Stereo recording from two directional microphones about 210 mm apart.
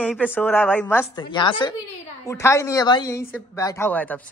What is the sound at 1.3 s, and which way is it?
A woman's voice, 20° left (ahead or behind).